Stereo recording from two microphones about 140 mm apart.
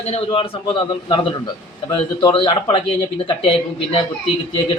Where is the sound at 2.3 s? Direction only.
40° left (ahead or behind).